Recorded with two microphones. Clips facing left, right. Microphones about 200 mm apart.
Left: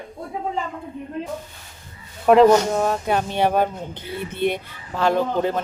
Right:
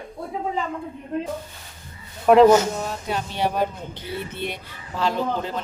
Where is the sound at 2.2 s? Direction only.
Centre (ahead or behind).